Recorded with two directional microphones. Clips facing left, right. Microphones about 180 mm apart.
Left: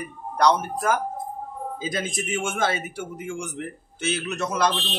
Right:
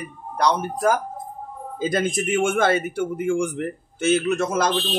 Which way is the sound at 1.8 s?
55° right (ahead or behind).